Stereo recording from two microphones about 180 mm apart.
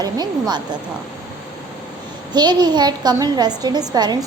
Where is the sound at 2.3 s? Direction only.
25° right (ahead or behind).